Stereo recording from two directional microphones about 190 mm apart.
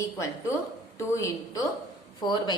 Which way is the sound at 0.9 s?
15° left (ahead or behind).